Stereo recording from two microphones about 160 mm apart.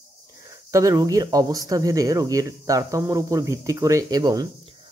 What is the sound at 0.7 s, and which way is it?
Speech, 20° right (ahead or behind).